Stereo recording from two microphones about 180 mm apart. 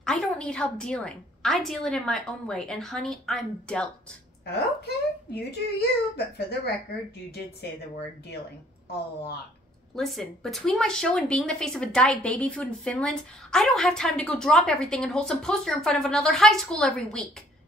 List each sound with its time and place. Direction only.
0.0 s speech: 5° left (ahead or behind)
4.5 s a child's voice: 60° left (ahead or behind)
9.9 s speech: centre (ahead or behind)